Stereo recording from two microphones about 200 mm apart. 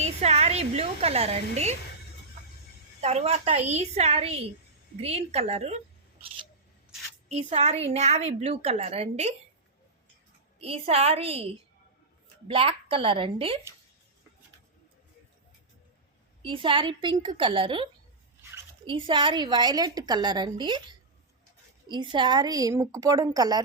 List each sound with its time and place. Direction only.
0.0 s a woman's voice: 30° right (ahead or behind)
3.0 s a woman's voice: 35° right (ahead or behind)
7.3 s a woman's voice: 35° right (ahead or behind)
10.6 s a woman's voice: 30° right (ahead or behind)
16.4 s a woman's voice: 25° right (ahead or behind)
18.9 s a woman's voice: 25° right (ahead or behind)